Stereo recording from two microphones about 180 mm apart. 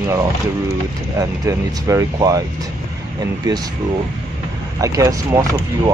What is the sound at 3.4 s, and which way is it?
Speech, 20° right (ahead or behind).